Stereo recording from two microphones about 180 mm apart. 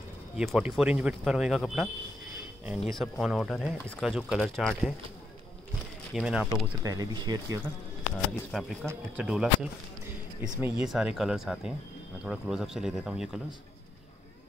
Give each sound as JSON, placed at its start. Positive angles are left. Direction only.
{"t": 0.4, "sound": "speech", "side_deg": -5}
{"t": 6.1, "sound": "speech", "side_deg": -5}
{"t": 6.8, "sound": "speech", "side_deg": -20}
{"t": 8.5, "sound": "speech", "side_deg": 0}